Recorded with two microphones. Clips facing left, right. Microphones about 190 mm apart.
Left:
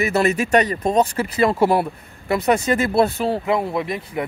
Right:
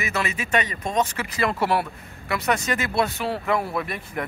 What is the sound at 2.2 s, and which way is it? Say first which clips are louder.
Speech: left 6 dB; 30° left (ahead or behind).